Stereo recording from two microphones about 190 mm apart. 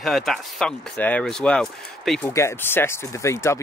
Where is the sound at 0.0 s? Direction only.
Centre (ahead or behind).